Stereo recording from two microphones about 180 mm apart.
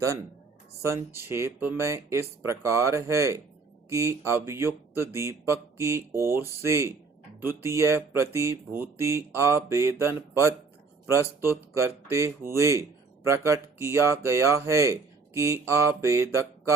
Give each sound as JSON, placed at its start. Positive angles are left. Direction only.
{"t": 0.8, "sound": "speech", "side_deg": -15}